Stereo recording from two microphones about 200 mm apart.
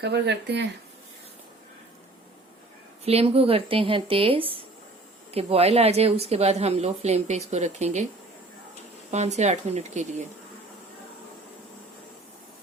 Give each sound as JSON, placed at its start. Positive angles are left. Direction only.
{"t": 0.0, "sound": "speech", "side_deg": -55}
{"t": 3.0, "sound": "speech", "side_deg": -30}
{"t": 9.1, "sound": "speech", "side_deg": -35}